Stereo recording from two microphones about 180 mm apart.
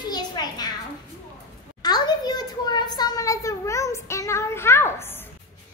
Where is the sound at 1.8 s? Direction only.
20° left (ahead or behind).